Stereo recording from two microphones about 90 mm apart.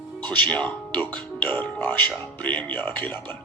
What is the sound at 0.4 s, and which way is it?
A man's voice, 15° left (ahead or behind).